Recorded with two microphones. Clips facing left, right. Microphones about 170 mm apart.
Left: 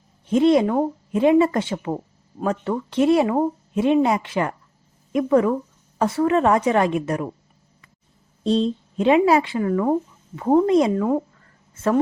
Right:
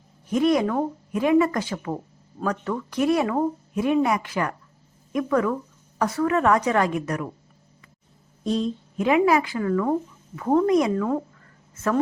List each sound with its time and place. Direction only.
0.3 s speech: 25° left (ahead or behind)
8.4 s speech: 30° left (ahead or behind)